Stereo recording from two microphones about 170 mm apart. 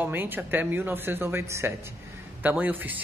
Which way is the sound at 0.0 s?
10° right (ahead or behind).